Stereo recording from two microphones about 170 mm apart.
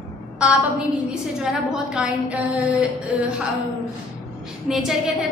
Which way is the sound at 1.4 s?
5° right (ahead or behind).